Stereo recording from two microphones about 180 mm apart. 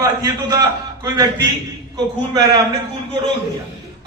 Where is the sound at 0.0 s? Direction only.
20° right (ahead or behind).